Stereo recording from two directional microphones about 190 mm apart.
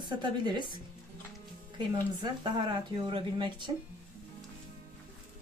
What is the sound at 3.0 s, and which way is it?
Speech, 25° right (ahead or behind).